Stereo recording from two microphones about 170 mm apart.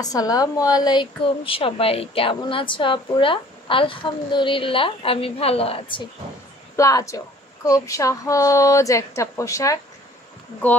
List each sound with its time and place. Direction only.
0.0 s a woman's voice: 20° left (ahead or behind)
6.8 s a woman's voice: 20° left (ahead or behind)